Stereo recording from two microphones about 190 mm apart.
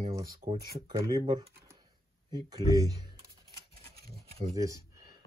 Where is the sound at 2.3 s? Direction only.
20° right (ahead or behind).